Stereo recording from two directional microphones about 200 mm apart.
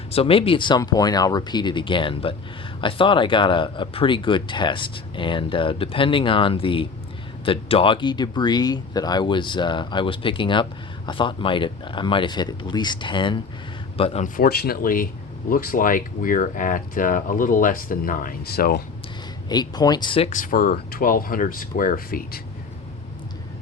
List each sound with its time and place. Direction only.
0.1 s a man's voice: 30° left (ahead or behind)
14.3 s speech: 50° left (ahead or behind)
19.5 s speech: 20° left (ahead or behind); by 22.4 s 45° left (ahead or behind)